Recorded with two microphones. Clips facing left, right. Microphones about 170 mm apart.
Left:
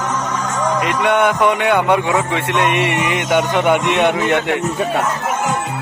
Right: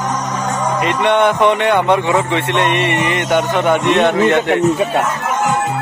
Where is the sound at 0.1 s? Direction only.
35° right (ahead or behind).